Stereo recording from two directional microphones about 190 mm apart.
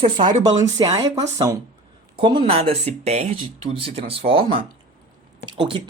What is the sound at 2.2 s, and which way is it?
Speech, 25° right (ahead or behind).